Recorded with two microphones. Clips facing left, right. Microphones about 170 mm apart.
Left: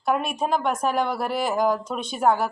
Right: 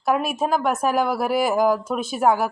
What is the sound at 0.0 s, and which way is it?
A woman's voice, 5° right (ahead or behind).